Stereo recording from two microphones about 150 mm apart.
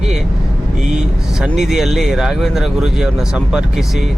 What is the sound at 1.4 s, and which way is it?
Speech, 5° right (ahead or behind).